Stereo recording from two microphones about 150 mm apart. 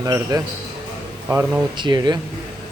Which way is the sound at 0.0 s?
20° right (ahead or behind).